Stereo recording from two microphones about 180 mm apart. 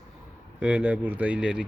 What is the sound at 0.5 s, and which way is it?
Speech, 10° right (ahead or behind).